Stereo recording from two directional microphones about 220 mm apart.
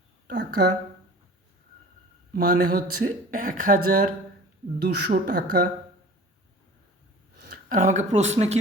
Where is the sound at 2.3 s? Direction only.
40° right (ahead or behind).